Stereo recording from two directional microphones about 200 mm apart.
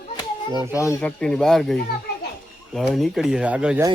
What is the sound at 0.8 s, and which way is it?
Speech, 15° left (ahead or behind).